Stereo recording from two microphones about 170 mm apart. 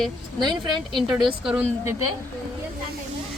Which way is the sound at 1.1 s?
5° right (ahead or behind).